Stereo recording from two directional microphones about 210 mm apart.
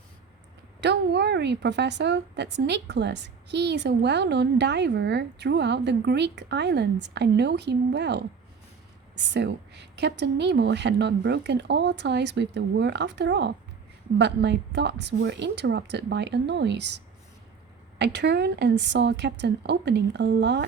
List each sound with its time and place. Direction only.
0.8 s a woman's voice: 55° right (ahead or behind)